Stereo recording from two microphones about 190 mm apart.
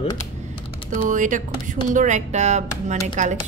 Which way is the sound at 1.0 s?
40° right (ahead or behind).